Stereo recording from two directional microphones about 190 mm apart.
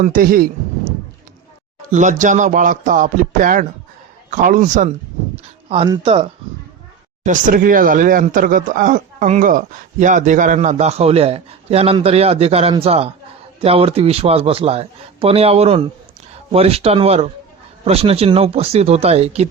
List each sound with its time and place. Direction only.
0.0 s speech: 45° right (ahead or behind)
1.9 s speech: 40° right (ahead or behind)
5.6 s speech: 30° right (ahead or behind)
7.3 s speech: 45° right (ahead or behind)